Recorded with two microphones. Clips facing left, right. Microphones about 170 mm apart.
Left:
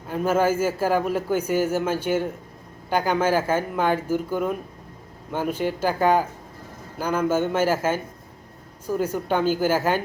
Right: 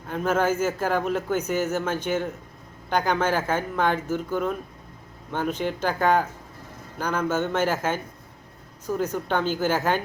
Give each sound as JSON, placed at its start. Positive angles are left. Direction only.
{"t": 0.1, "sound": "a man's voice", "side_deg": 10}